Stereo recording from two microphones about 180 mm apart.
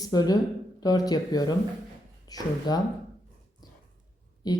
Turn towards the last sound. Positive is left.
turn(degrees=20)  # may be behind; listen again after turning